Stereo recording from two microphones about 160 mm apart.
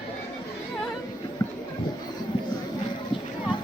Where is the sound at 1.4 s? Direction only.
25° left (ahead or behind).